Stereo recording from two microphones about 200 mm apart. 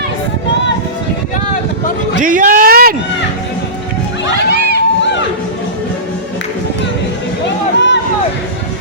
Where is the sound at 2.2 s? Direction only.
40° right (ahead or behind).